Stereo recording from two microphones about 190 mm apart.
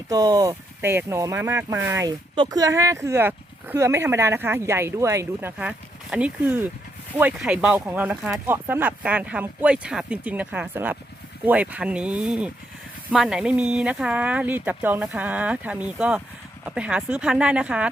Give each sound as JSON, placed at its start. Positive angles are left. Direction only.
{"t": 0.1, "sound": "speech", "side_deg": -20}